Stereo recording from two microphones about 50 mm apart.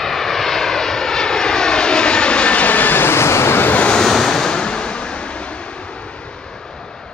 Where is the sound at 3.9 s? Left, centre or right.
Centre.